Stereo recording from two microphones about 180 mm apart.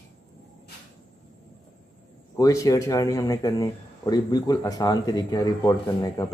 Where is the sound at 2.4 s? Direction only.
20° left (ahead or behind).